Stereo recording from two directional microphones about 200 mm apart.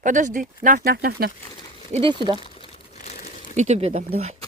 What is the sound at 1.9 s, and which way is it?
Speech, 25° right (ahead or behind).